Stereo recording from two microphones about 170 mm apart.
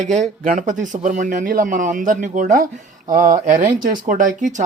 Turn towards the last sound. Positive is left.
turn(degrees=-50)  # may be behind; listen again after turning